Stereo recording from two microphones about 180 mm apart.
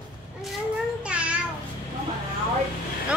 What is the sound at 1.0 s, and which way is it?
Child singing, 5° right (ahead or behind).